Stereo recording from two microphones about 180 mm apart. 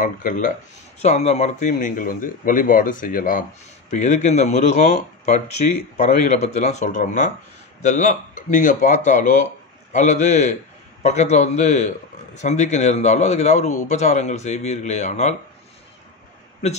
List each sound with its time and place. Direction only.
0.0 s speech: 45° left (ahead or behind)
1.0 s a man's voice: 35° left (ahead or behind)